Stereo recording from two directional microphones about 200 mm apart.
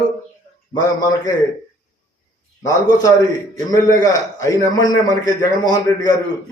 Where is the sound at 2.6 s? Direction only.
20° left (ahead or behind).